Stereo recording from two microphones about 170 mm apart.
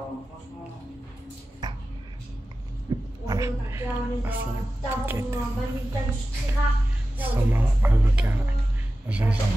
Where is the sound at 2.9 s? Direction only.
25° right (ahead or behind).